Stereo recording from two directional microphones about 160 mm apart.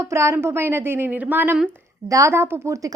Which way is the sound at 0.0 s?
20° right (ahead or behind).